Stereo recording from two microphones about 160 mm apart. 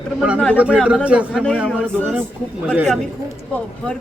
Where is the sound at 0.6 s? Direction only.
5° right (ahead or behind).